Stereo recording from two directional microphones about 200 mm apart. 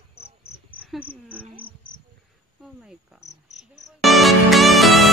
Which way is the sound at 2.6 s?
5° right (ahead or behind).